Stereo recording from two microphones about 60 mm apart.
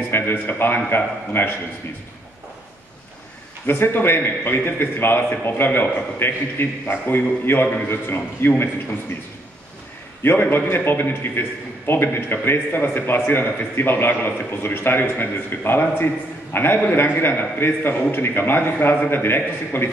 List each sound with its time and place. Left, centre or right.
0.1 s a man's voice: left
3.6 s a man's voice: left
10.2 s a man's voice: left